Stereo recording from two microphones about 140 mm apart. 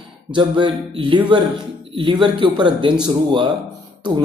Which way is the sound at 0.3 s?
35° right (ahead or behind).